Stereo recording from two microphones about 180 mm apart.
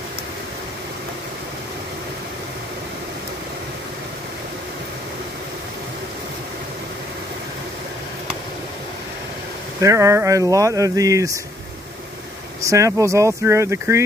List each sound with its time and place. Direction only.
9.8 s speech: 15° right (ahead or behind)
12.6 s speech: 15° right (ahead or behind)